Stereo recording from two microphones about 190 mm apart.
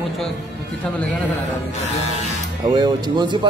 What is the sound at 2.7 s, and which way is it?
Speech, 20° right (ahead or behind).